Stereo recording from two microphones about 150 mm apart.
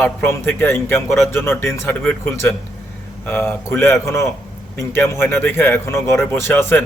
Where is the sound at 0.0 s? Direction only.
15° left (ahead or behind).